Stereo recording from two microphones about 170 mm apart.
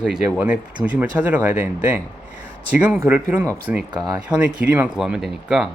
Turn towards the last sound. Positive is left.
turn(degrees=-5)  # may be behind; listen again after turning